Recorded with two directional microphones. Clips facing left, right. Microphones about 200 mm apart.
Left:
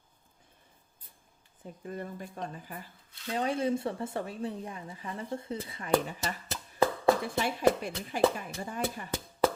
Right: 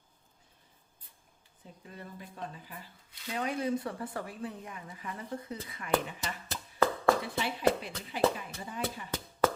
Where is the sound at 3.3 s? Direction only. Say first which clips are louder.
Left 3 dB; 30° left (ahead or behind).